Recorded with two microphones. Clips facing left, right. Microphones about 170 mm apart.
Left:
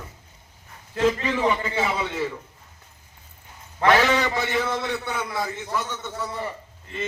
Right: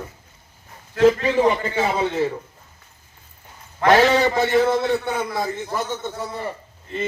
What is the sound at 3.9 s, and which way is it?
A man's voice, 40° right (ahead or behind).